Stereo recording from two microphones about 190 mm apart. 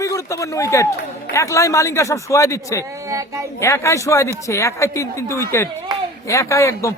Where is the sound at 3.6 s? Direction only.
15° left (ahead or behind).